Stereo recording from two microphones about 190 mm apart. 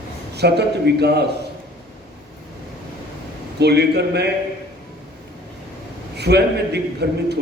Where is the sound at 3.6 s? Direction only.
60° right (ahead or behind).